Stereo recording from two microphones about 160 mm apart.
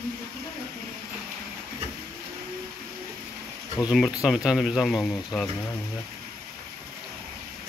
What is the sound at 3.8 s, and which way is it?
Speech, 5° right (ahead or behind).